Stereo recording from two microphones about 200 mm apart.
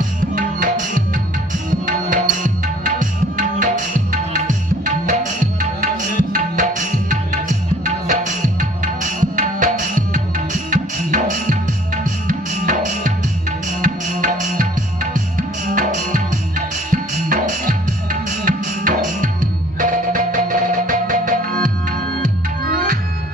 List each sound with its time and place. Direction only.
0.4 s music: 40° right (ahead or behind)
1.9 s tabla: 40° right (ahead or behind)
6.5 s music: 40° right (ahead or behind)